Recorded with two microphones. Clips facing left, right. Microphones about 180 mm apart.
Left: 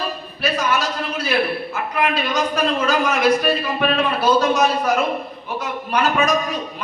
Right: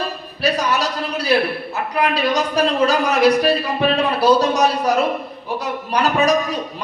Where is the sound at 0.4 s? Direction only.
35° right (ahead or behind).